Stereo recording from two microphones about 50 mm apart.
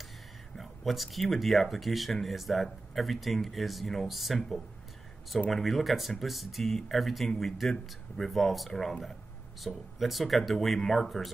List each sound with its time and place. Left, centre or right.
0.6 s speech: centre